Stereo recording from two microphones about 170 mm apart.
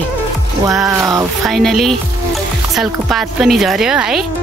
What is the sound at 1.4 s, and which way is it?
Speech, centre (ahead or behind).